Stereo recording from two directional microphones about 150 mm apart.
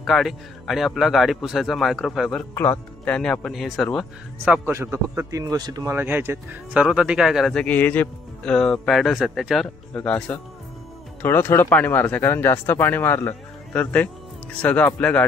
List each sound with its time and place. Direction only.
0.0 s speech: centre (ahead or behind)
2.5 s speech: 15° left (ahead or behind); by 4.6 s centre (ahead or behind)
4.6 s speech: 15° right (ahead or behind)
5.9 s speech: 15° right (ahead or behind); by 15.2 s 10° left (ahead or behind)